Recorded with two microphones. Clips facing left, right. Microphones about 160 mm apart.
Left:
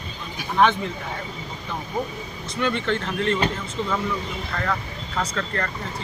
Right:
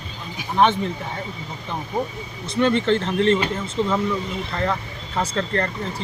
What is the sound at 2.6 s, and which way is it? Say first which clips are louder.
Speech: right 5 dB; 25° right (ahead or behind).